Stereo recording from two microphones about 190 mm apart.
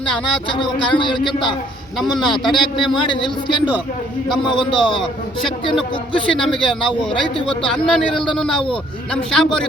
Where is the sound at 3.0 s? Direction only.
25° left (ahead or behind).